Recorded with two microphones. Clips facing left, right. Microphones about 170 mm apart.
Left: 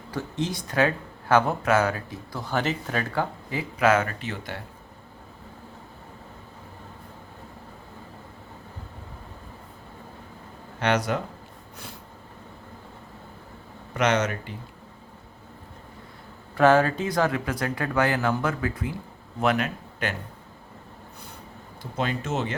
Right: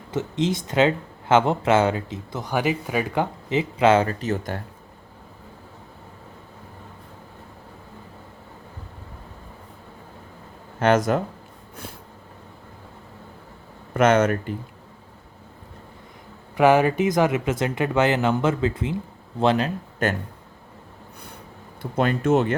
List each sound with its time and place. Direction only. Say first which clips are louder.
0.1 s speech: right 5 dB; 20° right (ahead or behind); by 4.6 s 45° right (ahead or behind)
10.8 s speech: right 5 dB; 45° right (ahead or behind)
13.9 s speech: right 6 dB; 50° right (ahead or behind)
16.6 s speech: right 2 dB; 15° right (ahead or behind); by 19.7 s 30° right (ahead or behind)
20.0 s speech: right 6 dB; 45° right (ahead or behind)
21.8 s speech: right 6 dB; 55° right (ahead or behind)